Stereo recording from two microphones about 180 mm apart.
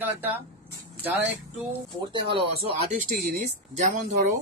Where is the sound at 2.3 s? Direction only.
35° right (ahead or behind).